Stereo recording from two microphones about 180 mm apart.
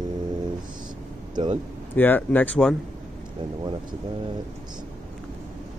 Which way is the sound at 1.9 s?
10° left (ahead or behind).